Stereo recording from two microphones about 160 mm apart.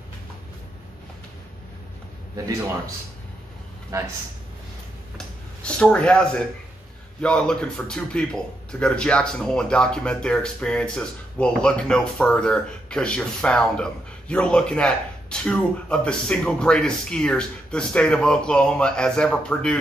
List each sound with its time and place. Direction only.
3.9 s speech: 20° right (ahead or behind)
5.1 s a sound: 5° left (ahead or behind)
7.2 s a man's voice: 5° left (ahead or behind)